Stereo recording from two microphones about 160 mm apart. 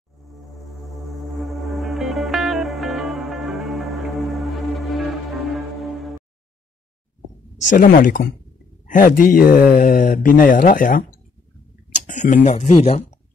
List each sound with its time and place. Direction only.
0.7 s music: centre (ahead or behind)
7.7 s speech: 55° left (ahead or behind)